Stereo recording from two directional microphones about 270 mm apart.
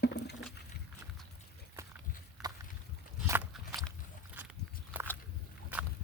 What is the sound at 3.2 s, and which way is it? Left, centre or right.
Walk, centre.